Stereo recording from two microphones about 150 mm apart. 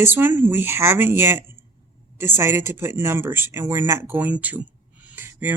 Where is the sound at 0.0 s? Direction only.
15° right (ahead or behind).